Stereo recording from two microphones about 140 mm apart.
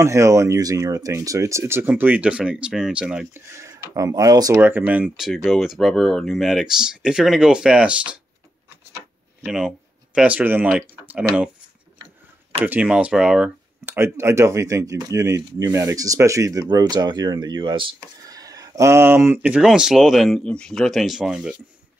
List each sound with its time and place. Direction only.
0.0 s speech: 20° right (ahead or behind)
3.3 s speech: 20° right (ahead or behind)
4.6 s speech: 15° right (ahead or behind)
9.4 s speech: 5° right (ahead or behind)
12.6 s speech: 10° right (ahead or behind)
13.9 s speech: 20° right (ahead or behind)